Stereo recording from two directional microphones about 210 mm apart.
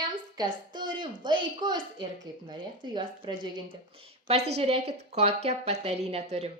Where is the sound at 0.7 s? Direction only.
20° right (ahead or behind).